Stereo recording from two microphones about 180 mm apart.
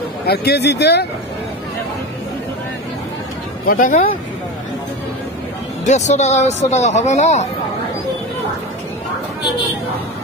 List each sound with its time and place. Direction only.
0.3 s speech: 65° left (ahead or behind)
3.6 s speech: 45° left (ahead or behind)
5.9 s speech: 40° left (ahead or behind)